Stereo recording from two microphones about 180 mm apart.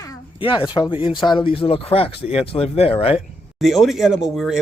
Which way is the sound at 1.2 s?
25° left (ahead or behind).